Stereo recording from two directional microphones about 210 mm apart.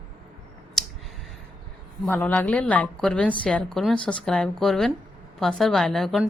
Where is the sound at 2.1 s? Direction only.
5° left (ahead or behind).